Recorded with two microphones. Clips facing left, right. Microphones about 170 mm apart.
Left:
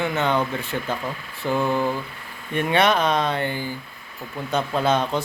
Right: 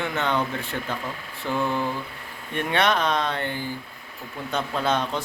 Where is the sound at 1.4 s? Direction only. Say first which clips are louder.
Left 4 dB; 10° left (ahead or behind).